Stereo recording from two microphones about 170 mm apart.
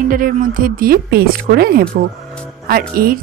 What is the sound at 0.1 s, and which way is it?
A woman's voice, 55° right (ahead or behind).